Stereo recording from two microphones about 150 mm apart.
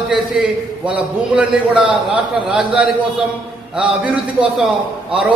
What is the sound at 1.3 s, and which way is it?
A man's voice, 5° right (ahead or behind).